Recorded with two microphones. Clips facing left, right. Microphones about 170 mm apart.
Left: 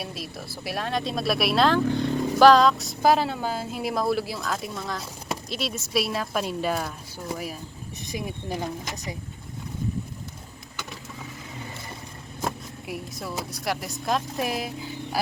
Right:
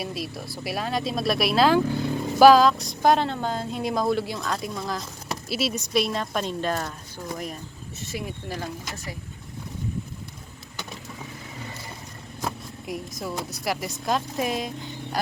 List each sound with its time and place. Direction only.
0.0 s speech: centre (ahead or behind); by 9.1 s 20° left (ahead or behind)
12.8 s speech: centre (ahead or behind)